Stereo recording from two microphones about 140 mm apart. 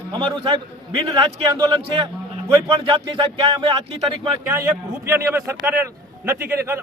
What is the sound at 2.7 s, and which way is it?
Music, 40° right (ahead or behind).